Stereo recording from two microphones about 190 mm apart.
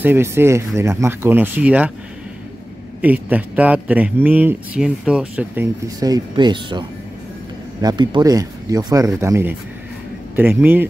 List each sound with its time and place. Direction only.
0.0 s speech: 10° right (ahead or behind)
3.0 s speech: 10° right (ahead or behind)
5.9 s speech: 20° right (ahead or behind)